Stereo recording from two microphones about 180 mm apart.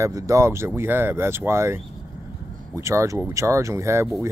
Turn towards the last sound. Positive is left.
turn(degrees=-15)  # may be behind; listen again after turning